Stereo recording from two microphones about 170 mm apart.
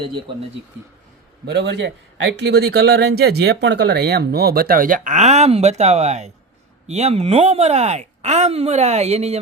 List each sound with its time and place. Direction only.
1.5 s speech: 80° right; by 9.4 s 40° right (ahead or behind)